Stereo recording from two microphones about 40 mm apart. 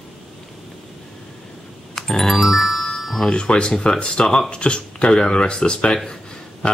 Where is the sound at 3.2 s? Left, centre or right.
Left.